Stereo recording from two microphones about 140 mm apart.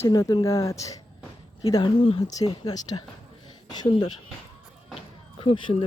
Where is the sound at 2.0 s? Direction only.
40° left (ahead or behind).